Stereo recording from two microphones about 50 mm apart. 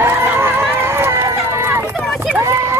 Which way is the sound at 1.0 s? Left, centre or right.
Right.